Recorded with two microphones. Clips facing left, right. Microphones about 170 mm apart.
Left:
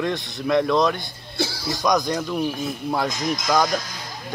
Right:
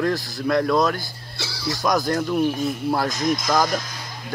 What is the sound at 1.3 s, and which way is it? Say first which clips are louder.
Music: left 4 dB; 50° left (ahead or behind).